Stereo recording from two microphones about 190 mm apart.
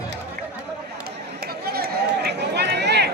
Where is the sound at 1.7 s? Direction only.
55° right (ahead or behind).